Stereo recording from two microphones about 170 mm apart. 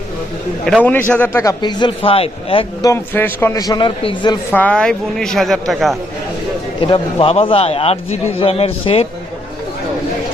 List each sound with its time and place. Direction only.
0.9 s a man's voice: 10° left (ahead or behind); by 2.6 s 35° left (ahead or behind)
2.8 s a man's voice: 15° left (ahead or behind); by 4.4 s 30° left (ahead or behind)
4.5 s speech: 5° left (ahead or behind)
6.8 s a man's voice: 30° left (ahead or behind)